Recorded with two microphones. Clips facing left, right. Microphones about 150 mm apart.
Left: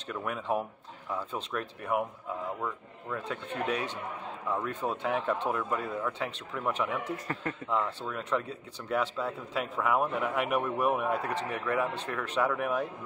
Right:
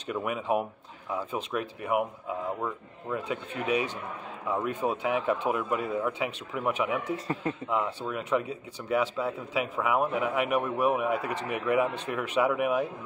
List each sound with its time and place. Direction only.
0.0 s speech: 10° right (ahead or behind)
7.2 s a man's voice: 20° right (ahead or behind)